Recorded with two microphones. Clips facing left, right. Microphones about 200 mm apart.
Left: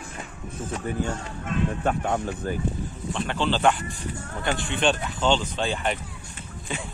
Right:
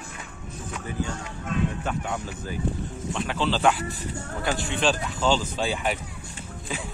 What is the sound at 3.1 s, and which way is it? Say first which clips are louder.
Speech: left 1 dB; centre (ahead or behind).